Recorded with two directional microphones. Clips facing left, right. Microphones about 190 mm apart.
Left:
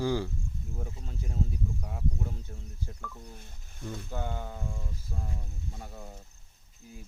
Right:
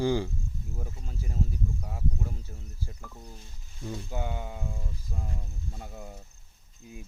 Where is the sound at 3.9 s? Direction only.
15° right (ahead or behind).